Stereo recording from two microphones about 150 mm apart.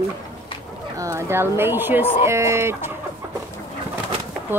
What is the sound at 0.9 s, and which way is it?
Speech, 20° right (ahead or behind).